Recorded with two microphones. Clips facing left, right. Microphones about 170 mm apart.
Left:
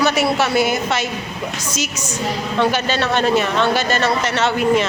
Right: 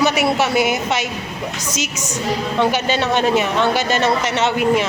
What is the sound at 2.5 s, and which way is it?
A man's voice, 15° right (ahead or behind).